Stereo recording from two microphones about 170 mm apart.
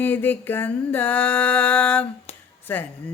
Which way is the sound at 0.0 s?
10° left (ahead or behind).